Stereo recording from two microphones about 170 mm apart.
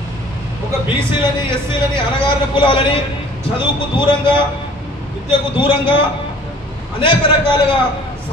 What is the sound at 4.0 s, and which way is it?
Speech, 30° left (ahead or behind).